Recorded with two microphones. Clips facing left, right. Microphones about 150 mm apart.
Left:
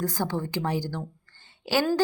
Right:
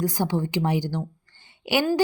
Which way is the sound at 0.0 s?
15° right (ahead or behind).